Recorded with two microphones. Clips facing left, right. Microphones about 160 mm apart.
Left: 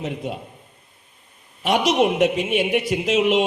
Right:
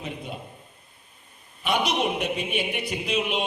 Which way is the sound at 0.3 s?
85° left.